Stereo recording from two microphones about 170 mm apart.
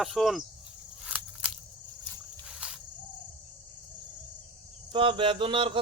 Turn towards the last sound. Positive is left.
turn(degrees=-30)  # may be behind; listen again after turning